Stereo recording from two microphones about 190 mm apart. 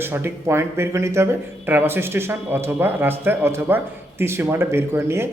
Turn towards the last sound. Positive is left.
turn(degrees=-15)  # may be behind; listen again after turning